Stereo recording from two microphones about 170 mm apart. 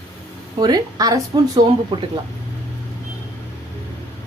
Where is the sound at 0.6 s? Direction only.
20° right (ahead or behind).